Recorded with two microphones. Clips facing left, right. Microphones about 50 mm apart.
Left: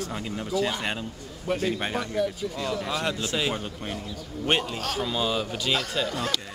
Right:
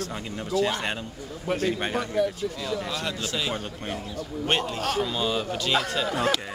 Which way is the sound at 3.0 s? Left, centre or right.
Centre.